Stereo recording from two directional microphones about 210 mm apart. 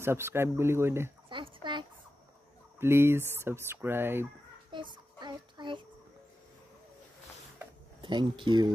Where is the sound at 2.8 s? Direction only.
10° right (ahead or behind).